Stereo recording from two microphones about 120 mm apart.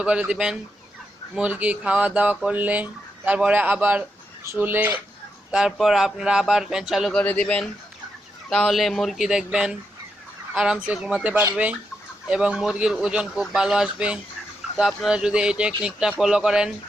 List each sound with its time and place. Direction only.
0.0 s speech: 10° right (ahead or behind)
5.5 s speech: 5° right (ahead or behind)
7.2 s speech: 10° left (ahead or behind)